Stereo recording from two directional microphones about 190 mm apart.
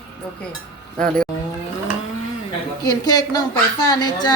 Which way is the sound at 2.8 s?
20° left (ahead or behind).